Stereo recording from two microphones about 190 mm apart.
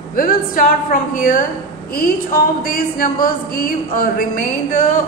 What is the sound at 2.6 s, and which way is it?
A woman's voice, 50° left (ahead or behind).